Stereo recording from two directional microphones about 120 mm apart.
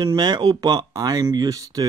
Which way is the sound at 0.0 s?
35° right (ahead or behind).